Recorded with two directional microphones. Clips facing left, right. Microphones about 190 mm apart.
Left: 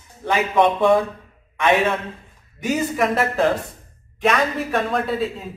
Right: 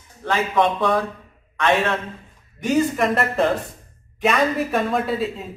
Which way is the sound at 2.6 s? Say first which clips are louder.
Right 2 dB; 5° left (ahead or behind).